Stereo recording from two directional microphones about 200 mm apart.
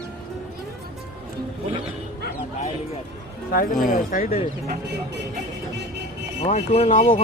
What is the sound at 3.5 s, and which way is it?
Speech, 45° left (ahead or behind).